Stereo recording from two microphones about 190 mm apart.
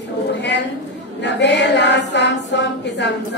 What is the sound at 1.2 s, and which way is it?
A woman's voice, 65° left (ahead or behind).